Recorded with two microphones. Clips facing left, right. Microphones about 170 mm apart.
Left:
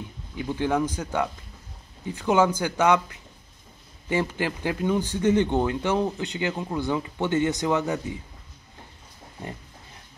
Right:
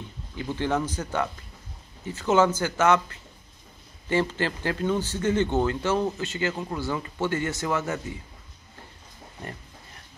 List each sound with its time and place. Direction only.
0.4 s speech: 10° left (ahead or behind)